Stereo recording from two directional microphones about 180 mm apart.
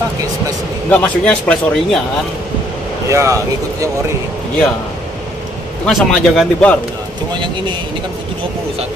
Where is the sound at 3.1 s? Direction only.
15° right (ahead or behind).